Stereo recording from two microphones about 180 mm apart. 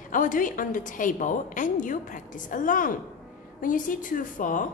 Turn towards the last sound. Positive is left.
turn(degrees=45)  # may be behind; listen again after turning